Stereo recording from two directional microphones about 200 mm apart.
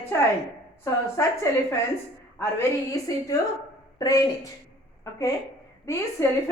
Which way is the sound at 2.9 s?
15° left (ahead or behind).